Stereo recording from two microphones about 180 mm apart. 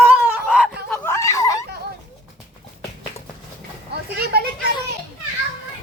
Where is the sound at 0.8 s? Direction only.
10° left (ahead or behind).